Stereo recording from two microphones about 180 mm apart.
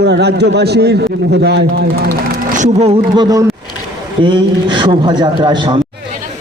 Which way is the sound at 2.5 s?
40° right (ahead or behind).